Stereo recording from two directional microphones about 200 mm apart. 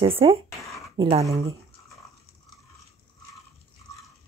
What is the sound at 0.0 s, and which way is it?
Speech, 30° right (ahead or behind).